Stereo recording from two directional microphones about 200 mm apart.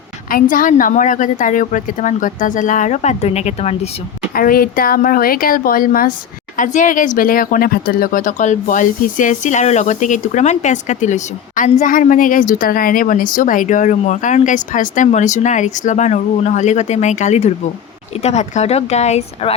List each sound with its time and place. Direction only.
0.3 s speech: 45° left (ahead or behind)
4.4 s a woman's voice: 45° left (ahead or behind)